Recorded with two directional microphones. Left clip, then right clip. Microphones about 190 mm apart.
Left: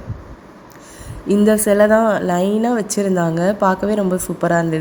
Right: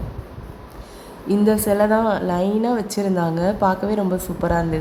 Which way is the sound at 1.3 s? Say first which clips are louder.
Left 4 dB; 15° left (ahead or behind).